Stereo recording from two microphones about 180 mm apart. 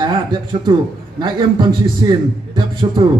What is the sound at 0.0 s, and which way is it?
A man's voice, 30° right (ahead or behind).